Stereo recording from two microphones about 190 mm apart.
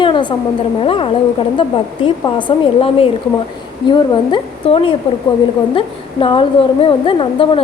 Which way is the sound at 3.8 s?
25° left (ahead or behind).